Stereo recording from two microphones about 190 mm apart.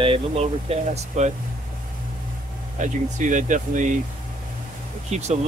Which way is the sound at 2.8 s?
40° right (ahead or behind).